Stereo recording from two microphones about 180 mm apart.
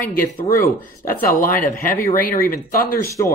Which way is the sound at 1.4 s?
50° left (ahead or behind).